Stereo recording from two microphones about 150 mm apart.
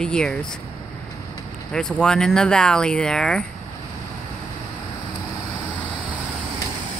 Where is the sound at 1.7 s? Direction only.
5° left (ahead or behind).